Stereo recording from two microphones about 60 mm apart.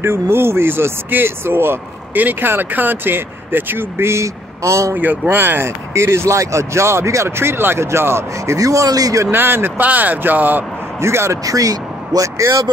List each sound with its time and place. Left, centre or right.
0.0 s speech: right
4.9 s speech: right
8.5 s speech: right
9.3 s speech: right
11.0 s speech: right
11.4 s speech: right